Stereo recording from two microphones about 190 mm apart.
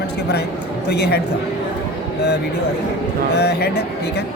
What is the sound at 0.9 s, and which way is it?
Speech, 60° left (ahead or behind).